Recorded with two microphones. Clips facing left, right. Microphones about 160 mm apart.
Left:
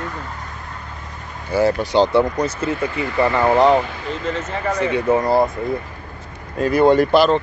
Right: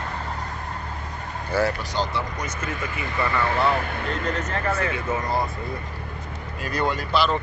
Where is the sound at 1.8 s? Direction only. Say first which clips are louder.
Left 12 dB; 65° left (ahead or behind).